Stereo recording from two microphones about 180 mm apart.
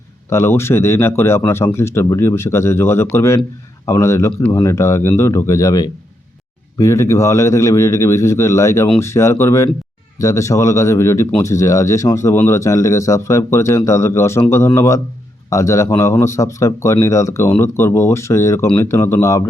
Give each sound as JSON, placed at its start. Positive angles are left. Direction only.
{"t": 0.3, "sound": "speech", "side_deg": 15}